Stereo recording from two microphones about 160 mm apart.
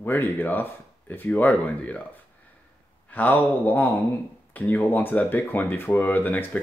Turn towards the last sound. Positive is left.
turn(degrees=10)  # may be behind; listen again after turning